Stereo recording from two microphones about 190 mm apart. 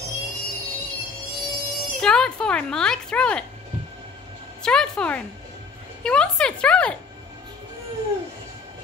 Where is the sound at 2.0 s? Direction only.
5° left (ahead or behind).